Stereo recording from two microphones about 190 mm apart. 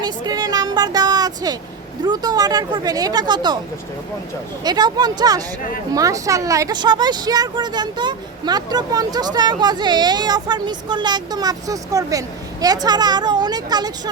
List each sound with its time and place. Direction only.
0.0 s a sound: 20° right (ahead or behind)
2.0 s speech: 20° right (ahead or behind)
4.6 s speech: 20° right (ahead or behind)